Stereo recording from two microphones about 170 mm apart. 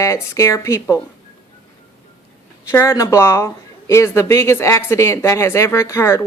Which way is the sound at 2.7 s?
15° left (ahead or behind).